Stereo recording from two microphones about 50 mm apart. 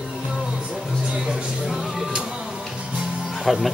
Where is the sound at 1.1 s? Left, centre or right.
Centre.